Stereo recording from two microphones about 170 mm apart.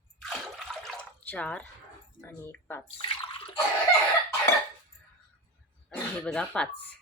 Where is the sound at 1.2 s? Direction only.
10° left (ahead or behind).